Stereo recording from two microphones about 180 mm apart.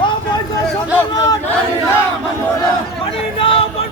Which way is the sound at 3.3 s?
30° left (ahead or behind).